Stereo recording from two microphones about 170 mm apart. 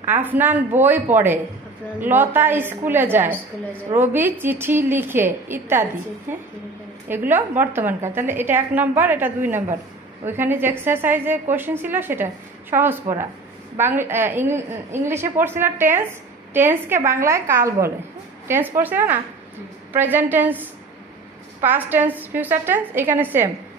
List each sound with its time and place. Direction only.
0.0 s a woman's voice: 10° right (ahead or behind)
7.1 s a woman's voice: 10° right (ahead or behind)